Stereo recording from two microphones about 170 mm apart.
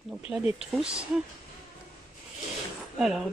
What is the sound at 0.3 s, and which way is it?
Speech, 5° right (ahead or behind).